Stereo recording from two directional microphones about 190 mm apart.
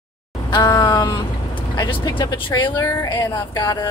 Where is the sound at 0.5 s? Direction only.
25° left (ahead or behind).